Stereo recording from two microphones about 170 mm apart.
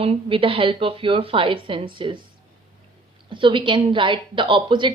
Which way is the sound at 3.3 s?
30° right (ahead or behind).